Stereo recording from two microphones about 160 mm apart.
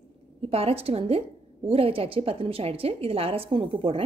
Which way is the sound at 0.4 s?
40° right (ahead or behind).